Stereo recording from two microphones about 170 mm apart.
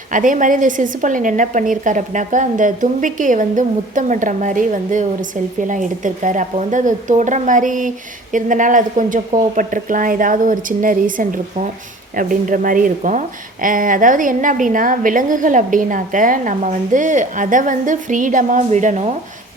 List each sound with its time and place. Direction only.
0.1 s a woman's voice: 50° right (ahead or behind)